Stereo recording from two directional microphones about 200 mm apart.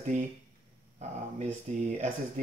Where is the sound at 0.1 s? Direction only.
40° right (ahead or behind).